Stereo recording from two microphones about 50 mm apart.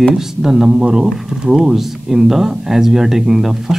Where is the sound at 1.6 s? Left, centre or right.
Centre.